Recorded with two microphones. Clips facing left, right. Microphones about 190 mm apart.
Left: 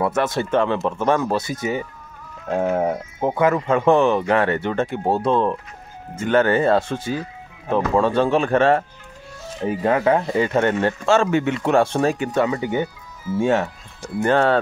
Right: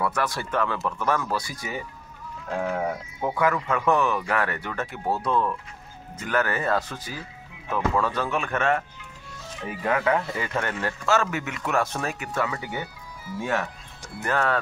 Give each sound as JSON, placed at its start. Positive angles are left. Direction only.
{"t": 0.0, "sound": "speech", "side_deg": 25}